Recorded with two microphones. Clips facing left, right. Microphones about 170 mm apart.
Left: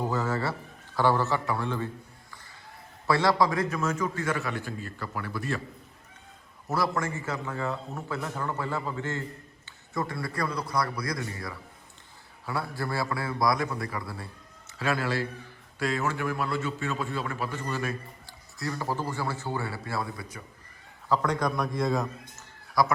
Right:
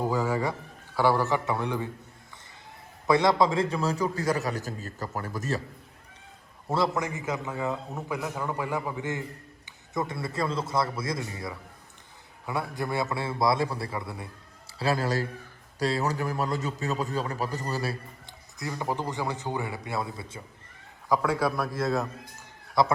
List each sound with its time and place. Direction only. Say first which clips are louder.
0.0 s a man's voice: right 2 dB; 10° right (ahead or behind)
3.1 s a man's voice: right 2 dB; 20° right (ahead or behind); by 5.6 s 40° right (ahead or behind)
6.7 s a man's voice: right 2 dB; 25° right (ahead or behind)
14.7 s a man's voice: right 2 dB; 35° right (ahead or behind)
18.3 s a man's voice: left 2 dB; 20° right (ahead or behind)
21.1 s a man's voice: right 1 dB; 5° right (ahead or behind)
22.8 s a man's voice: right 1 dB; 25° right (ahead or behind)